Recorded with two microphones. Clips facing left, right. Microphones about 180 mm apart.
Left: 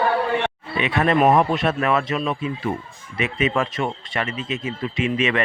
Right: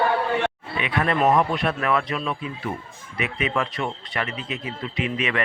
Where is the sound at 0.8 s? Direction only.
25° left (ahead or behind).